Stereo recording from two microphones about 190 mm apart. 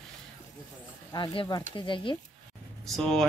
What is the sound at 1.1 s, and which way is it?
Speech, 25° left (ahead or behind).